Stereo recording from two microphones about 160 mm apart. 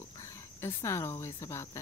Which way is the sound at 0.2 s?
15° left (ahead or behind).